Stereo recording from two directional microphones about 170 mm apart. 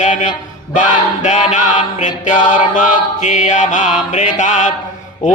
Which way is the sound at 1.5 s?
50° left (ahead or behind).